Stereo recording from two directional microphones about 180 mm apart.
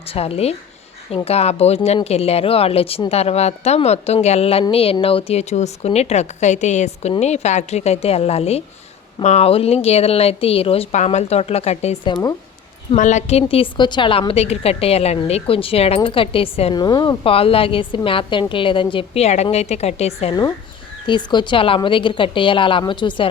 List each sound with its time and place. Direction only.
0.0 s speech: 30° left (ahead or behind)
21.1 s a woman's voice: 25° left (ahead or behind)